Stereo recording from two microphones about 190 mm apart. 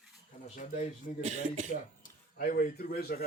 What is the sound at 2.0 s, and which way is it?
Speech, 45° left (ahead or behind).